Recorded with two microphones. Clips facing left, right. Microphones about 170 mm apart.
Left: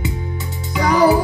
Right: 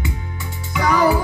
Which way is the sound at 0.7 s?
40° left (ahead or behind).